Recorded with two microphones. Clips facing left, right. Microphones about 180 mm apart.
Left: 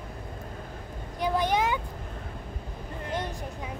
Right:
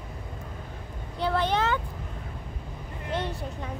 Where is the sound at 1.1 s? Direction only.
15° left (ahead or behind).